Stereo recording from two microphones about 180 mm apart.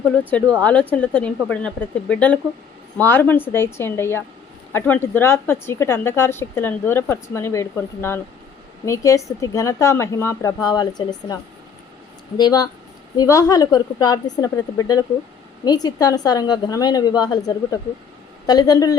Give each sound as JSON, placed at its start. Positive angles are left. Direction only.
{"t": 0.3, "sound": "a woman's voice", "side_deg": 5}
{"t": 12.4, "sound": "a woman's voice", "side_deg": 20}